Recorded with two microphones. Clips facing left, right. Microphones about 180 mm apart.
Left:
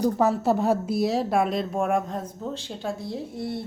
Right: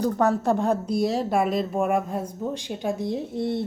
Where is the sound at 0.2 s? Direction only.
5° left (ahead or behind).